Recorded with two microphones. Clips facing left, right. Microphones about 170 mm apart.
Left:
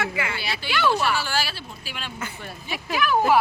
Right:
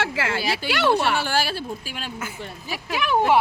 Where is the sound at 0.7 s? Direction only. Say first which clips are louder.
Right 1 dB; 70° right (ahead or behind); by 2.0 s 45° right (ahead or behind).